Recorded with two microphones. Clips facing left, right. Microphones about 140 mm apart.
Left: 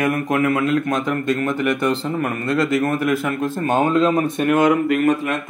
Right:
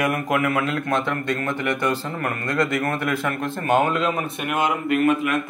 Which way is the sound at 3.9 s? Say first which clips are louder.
Left 7 dB; 30° left (ahead or behind).